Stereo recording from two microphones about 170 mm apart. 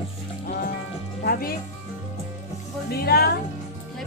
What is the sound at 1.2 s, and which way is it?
Music, 60° left (ahead or behind).